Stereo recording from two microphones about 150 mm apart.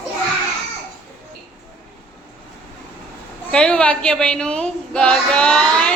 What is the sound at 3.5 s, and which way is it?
A woman's voice, 5° left (ahead or behind).